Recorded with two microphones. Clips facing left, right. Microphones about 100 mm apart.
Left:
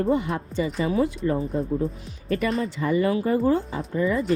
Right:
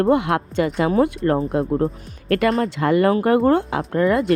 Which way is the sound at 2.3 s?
90° right.